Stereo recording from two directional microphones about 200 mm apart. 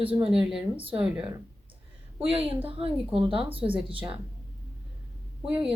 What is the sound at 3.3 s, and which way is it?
Speech, 25° right (ahead or behind).